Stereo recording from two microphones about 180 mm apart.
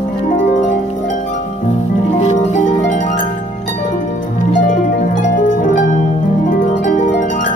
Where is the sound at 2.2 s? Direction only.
40° left (ahead or behind).